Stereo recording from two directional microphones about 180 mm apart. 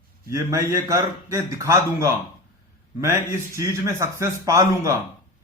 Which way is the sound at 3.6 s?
15° right (ahead or behind).